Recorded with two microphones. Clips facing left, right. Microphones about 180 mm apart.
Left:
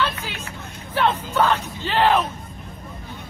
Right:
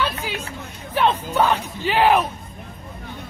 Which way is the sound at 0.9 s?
15° right (ahead or behind).